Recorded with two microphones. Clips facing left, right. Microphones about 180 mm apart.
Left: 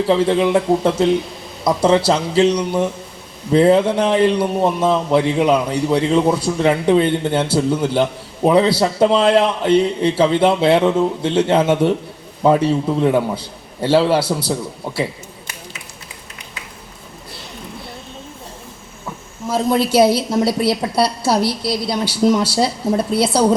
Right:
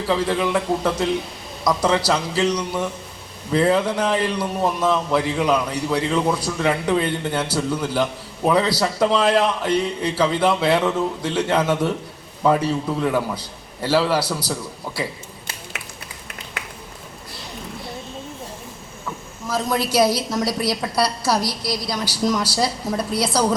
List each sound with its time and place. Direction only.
0.1 s a man's voice: 25° left (ahead or behind)
19.5 s a man's voice: 25° left (ahead or behind)